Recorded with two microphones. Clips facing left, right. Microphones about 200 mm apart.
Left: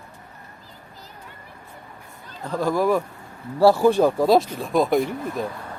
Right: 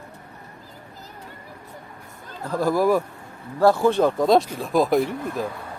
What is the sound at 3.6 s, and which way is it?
Speech, 10° left (ahead or behind).